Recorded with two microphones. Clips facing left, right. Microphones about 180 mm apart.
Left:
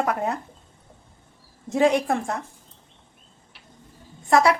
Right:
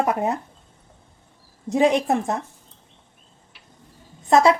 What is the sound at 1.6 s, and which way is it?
Speech, 20° right (ahead or behind).